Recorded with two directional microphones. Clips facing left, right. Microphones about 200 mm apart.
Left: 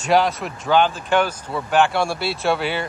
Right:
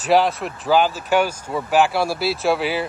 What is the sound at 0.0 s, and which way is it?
Speech, centre (ahead or behind).